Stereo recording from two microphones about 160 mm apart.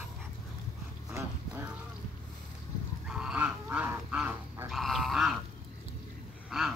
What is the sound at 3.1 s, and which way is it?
Goose, 5° right (ahead or behind).